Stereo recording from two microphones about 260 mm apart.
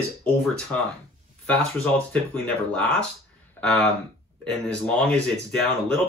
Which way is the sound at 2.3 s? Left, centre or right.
Centre.